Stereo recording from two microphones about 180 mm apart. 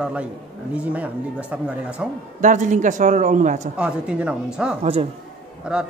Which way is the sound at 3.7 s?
5° right (ahead or behind).